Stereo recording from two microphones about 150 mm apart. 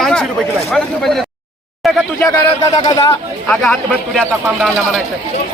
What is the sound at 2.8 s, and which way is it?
Speech, 30° left (ahead or behind).